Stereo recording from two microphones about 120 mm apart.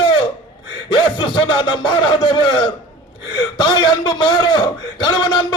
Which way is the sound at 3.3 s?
40° left (ahead or behind).